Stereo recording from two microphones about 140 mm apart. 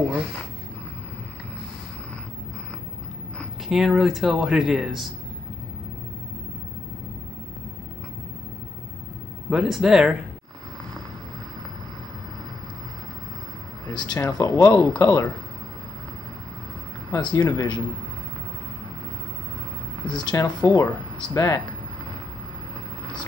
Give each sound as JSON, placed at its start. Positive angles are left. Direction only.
{"t": 3.3, "sound": "speech", "side_deg": -5}
{"t": 9.5, "sound": "speech", "side_deg": -5}
{"t": 13.8, "sound": "speech", "side_deg": 25}
{"t": 17.1, "sound": "speech", "side_deg": 30}
{"t": 20.2, "sound": "speech", "side_deg": 30}